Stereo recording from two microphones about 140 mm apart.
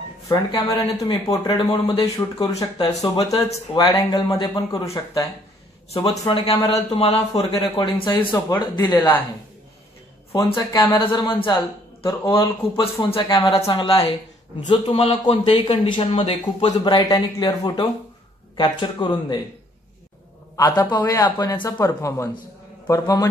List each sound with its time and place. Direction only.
0.3 s speech: 25° left (ahead or behind)
6.0 s speech: 35° left (ahead or behind)
10.3 s speech: 30° left (ahead or behind)
20.5 s speech: 30° left (ahead or behind)